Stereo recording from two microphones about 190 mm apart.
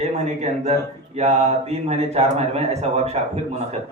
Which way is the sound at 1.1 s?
35° right (ahead or behind).